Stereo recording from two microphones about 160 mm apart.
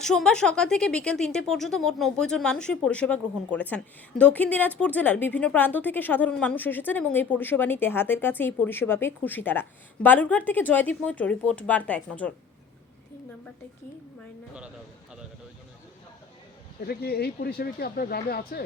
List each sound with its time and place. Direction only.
0.0 s speech: 5° left (ahead or behind)
16.8 s speech: 75° left (ahead or behind)